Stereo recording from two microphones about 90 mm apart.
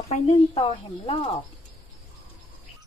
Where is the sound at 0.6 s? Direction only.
90° left.